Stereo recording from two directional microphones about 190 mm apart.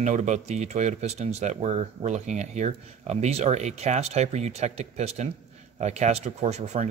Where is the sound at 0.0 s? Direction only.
40° right (ahead or behind).